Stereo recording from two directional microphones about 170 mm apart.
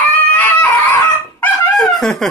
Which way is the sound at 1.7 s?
Centre (ahead or behind).